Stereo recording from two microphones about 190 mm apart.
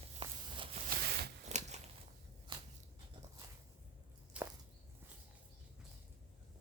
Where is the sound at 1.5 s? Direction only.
35° right (ahead or behind).